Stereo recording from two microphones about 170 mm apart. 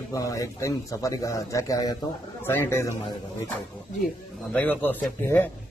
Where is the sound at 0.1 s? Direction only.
20° left (ahead or behind).